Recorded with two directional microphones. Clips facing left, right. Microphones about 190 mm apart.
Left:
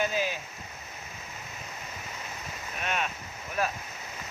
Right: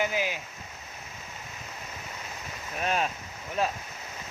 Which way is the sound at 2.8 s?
35° right (ahead or behind).